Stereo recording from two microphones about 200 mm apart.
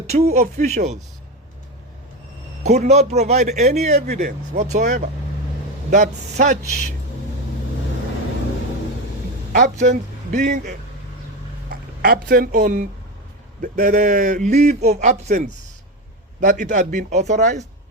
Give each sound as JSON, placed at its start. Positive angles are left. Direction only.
{"t": 0.1, "sound": "a man's voice", "side_deg": -35}
{"t": 2.6, "sound": "a man's voice", "side_deg": -35}
{"t": 9.5, "sound": "a man's voice", "side_deg": -40}
{"t": 9.9, "sound": "a man's voice", "side_deg": -55}